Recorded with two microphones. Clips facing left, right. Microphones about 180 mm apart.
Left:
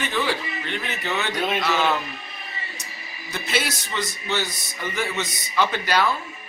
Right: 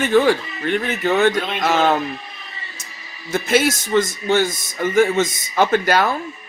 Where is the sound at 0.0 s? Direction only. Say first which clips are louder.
Right 10 dB; 50° right (ahead or behind).